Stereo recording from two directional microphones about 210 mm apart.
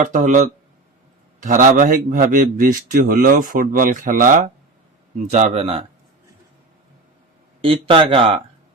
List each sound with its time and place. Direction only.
0.0 s a man's voice: 35° right (ahead or behind)
7.6 s speech: 25° right (ahead or behind)